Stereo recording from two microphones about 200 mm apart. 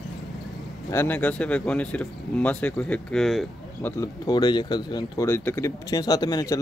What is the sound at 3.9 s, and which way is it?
Speech, 20° left (ahead or behind).